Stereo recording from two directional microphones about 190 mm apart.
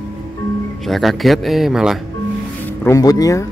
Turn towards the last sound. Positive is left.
turn(degrees=20)  # may be behind; listen again after turning